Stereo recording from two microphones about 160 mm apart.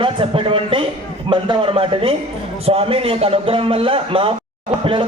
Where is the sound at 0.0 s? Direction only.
35° right (ahead or behind).